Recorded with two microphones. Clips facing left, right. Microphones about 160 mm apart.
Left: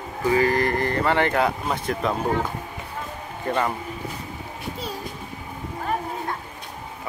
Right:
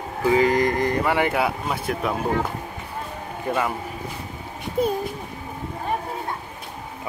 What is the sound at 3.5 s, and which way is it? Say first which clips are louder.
Speech: even; 10° right (ahead or behind).